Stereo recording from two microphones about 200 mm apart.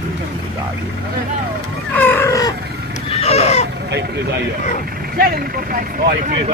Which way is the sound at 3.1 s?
30° left (ahead or behind).